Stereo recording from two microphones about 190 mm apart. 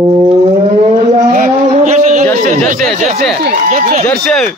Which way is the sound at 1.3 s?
40° right (ahead or behind).